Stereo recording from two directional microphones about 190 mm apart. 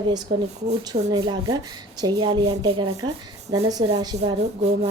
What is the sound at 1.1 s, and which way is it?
A woman's voice, 20° right (ahead or behind).